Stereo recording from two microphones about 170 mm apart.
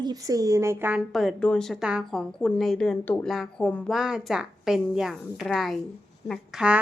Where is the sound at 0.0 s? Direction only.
20° right (ahead or behind).